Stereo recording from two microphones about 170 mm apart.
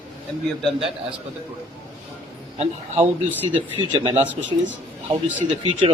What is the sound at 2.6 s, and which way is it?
Speech, 40° right (ahead or behind).